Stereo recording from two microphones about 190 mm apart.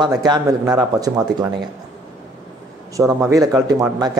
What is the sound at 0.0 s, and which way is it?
A man's voice, 20° right (ahead or behind).